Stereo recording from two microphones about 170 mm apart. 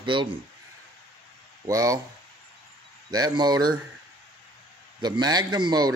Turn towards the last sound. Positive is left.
turn(degrees=-25)  # may be behind; listen again after turning